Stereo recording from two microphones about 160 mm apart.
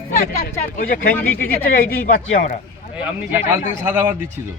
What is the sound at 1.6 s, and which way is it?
Speech, 65° left (ahead or behind).